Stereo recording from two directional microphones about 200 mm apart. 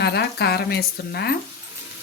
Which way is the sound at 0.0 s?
55° left (ahead or behind).